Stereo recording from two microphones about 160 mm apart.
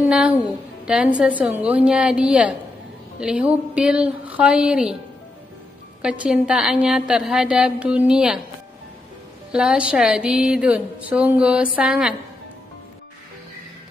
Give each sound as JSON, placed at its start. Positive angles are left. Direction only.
{"t": 0.0, "sound": "a woman's voice", "side_deg": -5}
{"t": 6.0, "sound": "a woman's voice", "side_deg": -5}
{"t": 9.5, "sound": "speech", "side_deg": -5}